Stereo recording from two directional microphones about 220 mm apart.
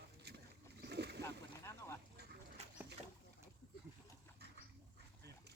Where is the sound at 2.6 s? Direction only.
30° right (ahead or behind).